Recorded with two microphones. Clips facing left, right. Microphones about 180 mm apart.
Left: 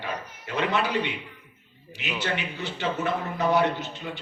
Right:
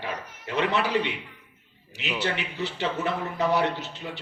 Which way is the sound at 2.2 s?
35° right (ahead or behind).